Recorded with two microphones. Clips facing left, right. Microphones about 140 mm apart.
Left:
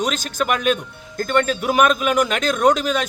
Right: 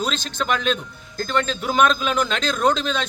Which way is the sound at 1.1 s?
60° left (ahead or behind).